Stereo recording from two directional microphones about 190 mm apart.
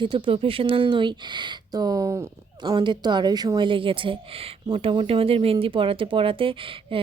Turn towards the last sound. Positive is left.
turn(degrees=-30)  # may be behind; listen again after turning